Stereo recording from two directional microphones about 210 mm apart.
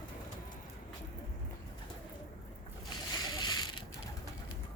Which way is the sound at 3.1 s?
20° left (ahead or behind).